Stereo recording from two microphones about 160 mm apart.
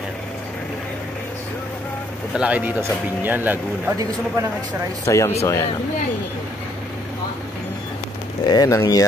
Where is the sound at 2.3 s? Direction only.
10° right (ahead or behind).